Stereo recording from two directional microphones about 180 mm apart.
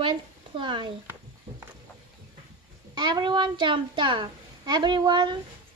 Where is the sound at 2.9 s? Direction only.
25° right (ahead or behind).